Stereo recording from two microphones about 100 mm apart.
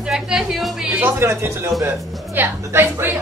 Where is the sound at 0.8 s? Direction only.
20° right (ahead or behind).